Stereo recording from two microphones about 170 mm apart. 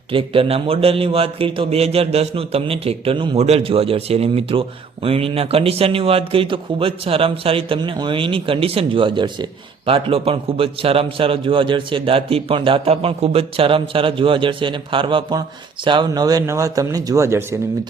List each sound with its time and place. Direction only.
0.1 s a man's voice: 30° right (ahead or behind); by 17.4 s 15° right (ahead or behind)